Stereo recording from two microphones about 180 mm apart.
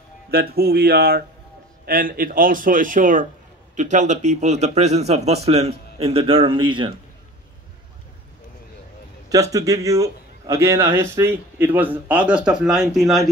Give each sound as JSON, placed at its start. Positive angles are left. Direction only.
{"t": 0.3, "sound": "a man's voice", "side_deg": -60}
{"t": 9.3, "sound": "a man's voice", "side_deg": -20}